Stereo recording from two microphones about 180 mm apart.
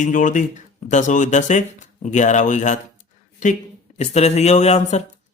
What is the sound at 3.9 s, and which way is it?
Speech, 40° left (ahead or behind).